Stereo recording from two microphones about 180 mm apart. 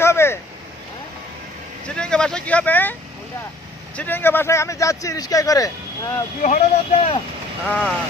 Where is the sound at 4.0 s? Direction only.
10° left (ahead or behind).